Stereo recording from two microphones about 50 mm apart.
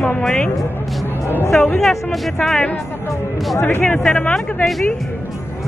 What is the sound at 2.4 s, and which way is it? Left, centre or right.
Speech, centre.